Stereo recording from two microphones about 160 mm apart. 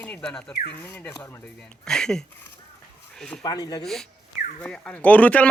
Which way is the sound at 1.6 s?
5° left (ahead or behind).